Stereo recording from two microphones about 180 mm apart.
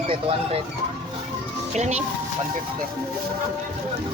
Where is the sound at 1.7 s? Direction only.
40° right (ahead or behind).